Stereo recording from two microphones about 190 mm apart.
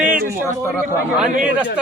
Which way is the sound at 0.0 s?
50° right (ahead or behind).